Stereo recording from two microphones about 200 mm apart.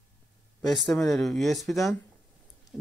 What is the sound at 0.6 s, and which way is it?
Speech, centre (ahead or behind).